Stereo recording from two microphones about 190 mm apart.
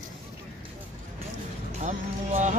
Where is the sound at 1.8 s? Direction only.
40° right (ahead or behind).